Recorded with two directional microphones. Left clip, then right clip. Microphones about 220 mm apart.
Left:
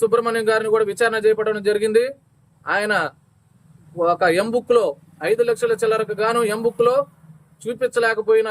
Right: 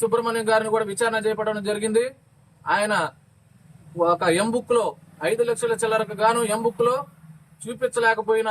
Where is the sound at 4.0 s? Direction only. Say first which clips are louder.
Left 3 dB; 25° left (ahead or behind).